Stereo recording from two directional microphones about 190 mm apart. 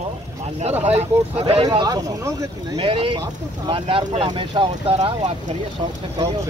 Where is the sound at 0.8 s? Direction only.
30° right (ahead or behind).